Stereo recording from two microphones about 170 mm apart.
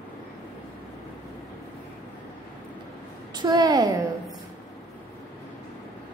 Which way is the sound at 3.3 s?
25° right (ahead or behind).